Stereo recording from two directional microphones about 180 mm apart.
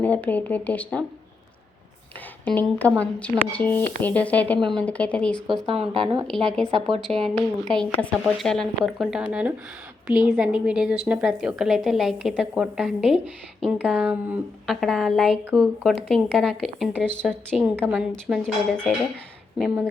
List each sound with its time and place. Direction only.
0.0 s speech: 10° left (ahead or behind)
2.4 s a woman's voice: 10° left (ahead or behind)
5.7 s a woman's voice: 30° right (ahead or behind)
6.2 s a woman's voice: 5° left (ahead or behind)
6.7 s a woman's voice: 30° right (ahead or behind)
7.7 s a woman's voice: 5° left (ahead or behind)